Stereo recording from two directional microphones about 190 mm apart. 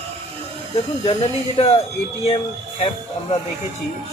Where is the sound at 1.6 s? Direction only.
30° left (ahead or behind).